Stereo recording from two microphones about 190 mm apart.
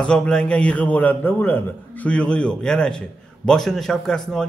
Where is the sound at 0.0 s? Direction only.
5° left (ahead or behind).